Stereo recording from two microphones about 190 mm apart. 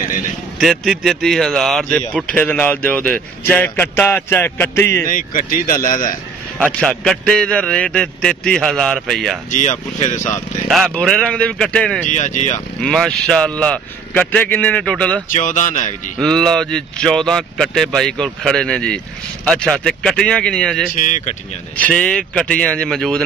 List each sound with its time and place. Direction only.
0.6 s a man's voice: centre (ahead or behind)
5.0 s speech: 45° left (ahead or behind)
6.6 s a man's voice: 5° left (ahead or behind)
9.5 s speech: 40° left (ahead or behind)
10.7 s a man's voice: centre (ahead or behind)
12.1 s speech: 40° left (ahead or behind)
12.8 s a man's voice: centre (ahead or behind)
15.2 s speech: 40° left (ahead or behind)
16.2 s a man's voice: 5° left (ahead or behind)
20.9 s speech: 45° left (ahead or behind)
21.8 s a man's voice: 5° left (ahead or behind)